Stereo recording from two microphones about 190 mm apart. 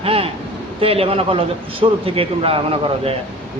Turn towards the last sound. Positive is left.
turn(degrees=-30)  # may be behind; listen again after turning